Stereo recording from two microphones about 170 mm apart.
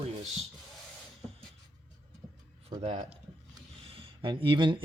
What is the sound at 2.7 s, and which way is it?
Speech, 35° right (ahead or behind).